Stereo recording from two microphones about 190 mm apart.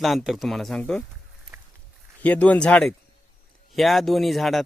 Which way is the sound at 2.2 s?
5° left (ahead or behind).